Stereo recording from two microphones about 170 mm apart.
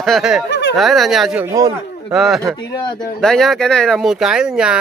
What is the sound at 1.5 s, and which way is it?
Speech, 20° right (ahead or behind).